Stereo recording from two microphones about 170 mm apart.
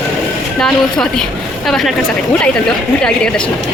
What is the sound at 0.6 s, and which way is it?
A woman's voice, 5° left (ahead or behind).